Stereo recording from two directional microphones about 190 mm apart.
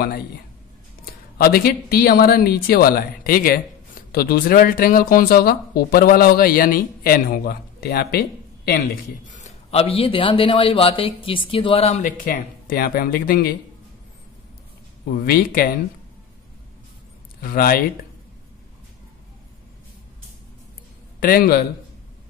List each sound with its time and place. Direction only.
1.0 s speech: 55° left (ahead or behind)
8.7 s a man's voice: 40° left (ahead or behind)
12.3 s speech: 50° left (ahead or behind)
15.2 s speech: 50° left (ahead or behind)
17.4 s speech: 50° left (ahead or behind)
21.2 s speech: 50° left (ahead or behind)